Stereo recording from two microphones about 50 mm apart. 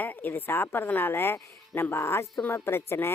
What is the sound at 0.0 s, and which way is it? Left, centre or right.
Speech, left.